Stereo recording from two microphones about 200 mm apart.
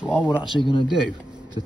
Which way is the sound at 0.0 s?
5° right (ahead or behind).